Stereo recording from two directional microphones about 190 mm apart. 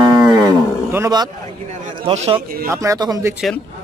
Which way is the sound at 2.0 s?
30° right (ahead or behind).